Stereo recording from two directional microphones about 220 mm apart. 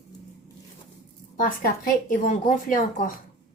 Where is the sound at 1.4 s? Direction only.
40° left (ahead or behind).